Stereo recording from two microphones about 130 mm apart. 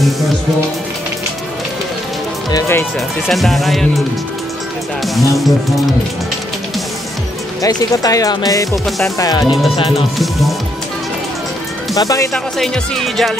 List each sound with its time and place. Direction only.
3.3 s speech: centre (ahead or behind)
5.0 s speech: centre (ahead or behind)
7.6 s speech: 25° left (ahead or behind)
8.8 s speech: centre (ahead or behind)
9.2 s speech: 30° left (ahead or behind)
9.8 s speech: 45° left (ahead or behind)
11.9 s speech: 25° left (ahead or behind)
12.5 s speech: 5° left (ahead or behind)